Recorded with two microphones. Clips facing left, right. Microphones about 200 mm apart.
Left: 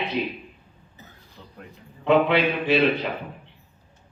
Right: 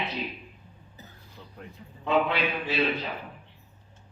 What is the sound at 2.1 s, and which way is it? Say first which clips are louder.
Speech: left 6 dB; 65° left (ahead or behind).